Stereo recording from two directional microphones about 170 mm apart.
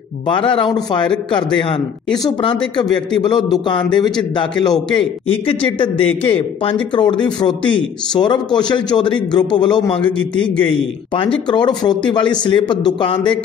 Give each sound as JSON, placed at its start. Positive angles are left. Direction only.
{"t": 0.3, "sound": "a man's voice", "side_deg": 30}
{"t": 2.0, "sound": "a man's voice", "side_deg": 25}